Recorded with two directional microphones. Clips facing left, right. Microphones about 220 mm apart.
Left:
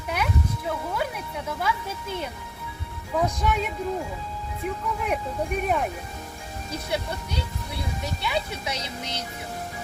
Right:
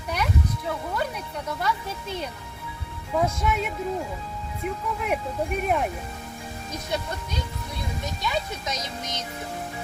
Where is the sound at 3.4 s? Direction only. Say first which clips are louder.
Even; centre (ahead or behind).